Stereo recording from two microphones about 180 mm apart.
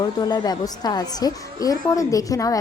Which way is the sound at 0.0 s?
20° left (ahead or behind).